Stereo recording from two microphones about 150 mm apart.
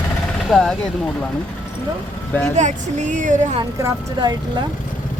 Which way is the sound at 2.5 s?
55° right (ahead or behind).